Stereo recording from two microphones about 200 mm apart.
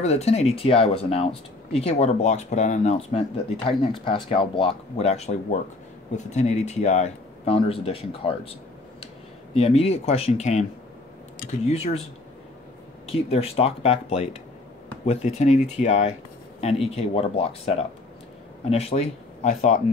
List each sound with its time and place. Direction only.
0.0 s speech: 35° left (ahead or behind)
13.0 s speech: 30° left (ahead or behind)